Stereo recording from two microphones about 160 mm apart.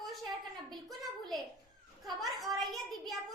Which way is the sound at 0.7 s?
Centre (ahead or behind).